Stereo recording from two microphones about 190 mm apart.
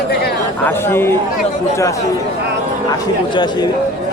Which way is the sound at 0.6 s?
10° left (ahead or behind).